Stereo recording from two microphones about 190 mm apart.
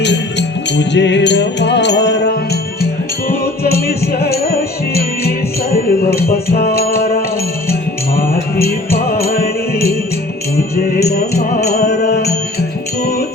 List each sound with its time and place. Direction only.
0.0 s music: 65° left (ahead or behind)